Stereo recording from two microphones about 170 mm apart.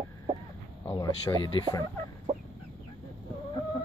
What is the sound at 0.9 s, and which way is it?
Speech, 25° left (ahead or behind).